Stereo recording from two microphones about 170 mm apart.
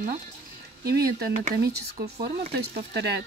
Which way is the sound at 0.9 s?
65° right (ahead or behind).